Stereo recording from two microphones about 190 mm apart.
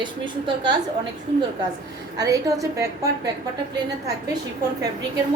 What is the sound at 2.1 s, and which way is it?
Speech, 20° right (ahead or behind).